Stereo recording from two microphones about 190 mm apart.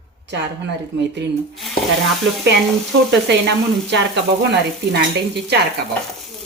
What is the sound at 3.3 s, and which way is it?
Speech, 65° right (ahead or behind).